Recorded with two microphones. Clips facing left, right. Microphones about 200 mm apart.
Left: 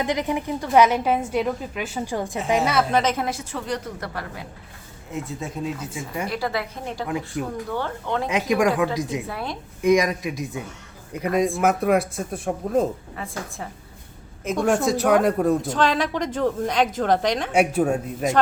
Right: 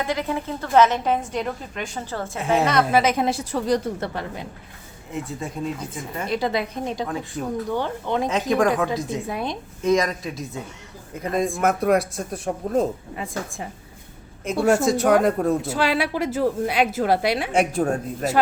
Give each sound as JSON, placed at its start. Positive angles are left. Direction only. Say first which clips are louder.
{"t": 0.0, "sound": "a woman's voice", "louder": "left 1 dB", "side_deg": 20}
{"t": 2.9, "sound": "speech", "louder": "right 2 dB", "side_deg": -10}
{"t": 3.2, "sound": "a woman's voice", "louder": "right 6 dB", "side_deg": -35}
{"t": 5.1, "sound": "speech", "louder": "even", "side_deg": 0}
{"t": 6.2, "sound": "a woman's voice", "louder": "right 5 dB", "side_deg": -20}
{"t": 7.3, "sound": "a woman's voice", "louder": "right 1 dB", "side_deg": 10}
{"t": 7.7, "sound": "speech", "louder": "right 3 dB", "side_deg": -15}
{"t": 8.3, "sound": "a woman's voice", "louder": "left 1 dB", "side_deg": 15}
{"t": 9.2, "sound": "speech", "louder": "right 3 dB", "side_deg": -20}
{"t": 9.8, "sound": "a woman's voice", "louder": "left 2 dB", "side_deg": 15}
{"t": 11.6, "sound": "speech", "louder": "right 3 dB", "side_deg": 5}
{"t": 13.1, "sound": "speech", "louder": "right 2 dB", "side_deg": -15}
{"t": 17.7, "sound": "a woman's voice", "louder": "left 1 dB", "side_deg": 5}